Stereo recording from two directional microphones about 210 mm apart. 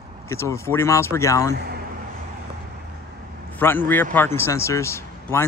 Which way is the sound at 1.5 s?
50° right (ahead or behind).